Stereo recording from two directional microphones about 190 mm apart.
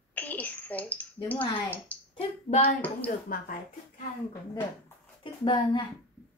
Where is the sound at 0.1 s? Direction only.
10° left (ahead or behind).